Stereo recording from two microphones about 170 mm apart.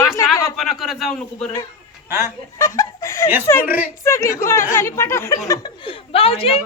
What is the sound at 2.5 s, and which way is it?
Chicken, 20° left (ahead or behind).